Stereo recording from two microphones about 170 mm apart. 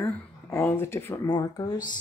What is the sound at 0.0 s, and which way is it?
Speech, 15° left (ahead or behind).